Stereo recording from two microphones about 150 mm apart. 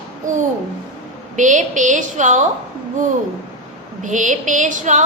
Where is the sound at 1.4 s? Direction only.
55° right (ahead or behind).